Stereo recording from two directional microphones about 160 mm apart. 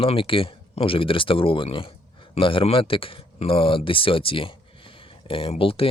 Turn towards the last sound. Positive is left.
turn(degrees=35)  # may be behind; listen again after turning